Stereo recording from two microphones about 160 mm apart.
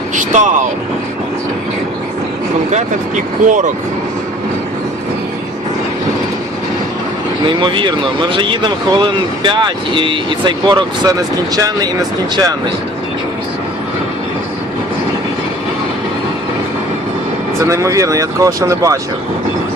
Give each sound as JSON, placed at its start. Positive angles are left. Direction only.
{"t": 0.2, "sound": "speech", "side_deg": -50}
{"t": 3.4, "sound": "speech", "side_deg": -50}
{"t": 7.4, "sound": "speech", "side_deg": -30}
{"t": 17.6, "sound": "speech", "side_deg": -20}